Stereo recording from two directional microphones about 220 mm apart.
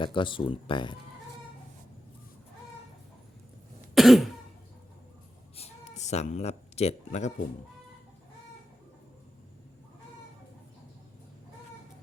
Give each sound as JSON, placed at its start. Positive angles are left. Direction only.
{"t": 0.0, "sound": "speech", "side_deg": 20}
{"t": 3.9, "sound": "cough", "side_deg": 0}
{"t": 5.5, "sound": "a sound", "side_deg": 30}